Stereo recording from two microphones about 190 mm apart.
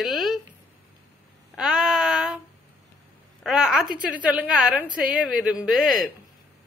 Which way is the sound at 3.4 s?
Centre (ahead or behind).